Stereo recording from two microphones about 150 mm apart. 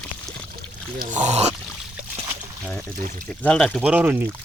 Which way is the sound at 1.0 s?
55° right (ahead or behind).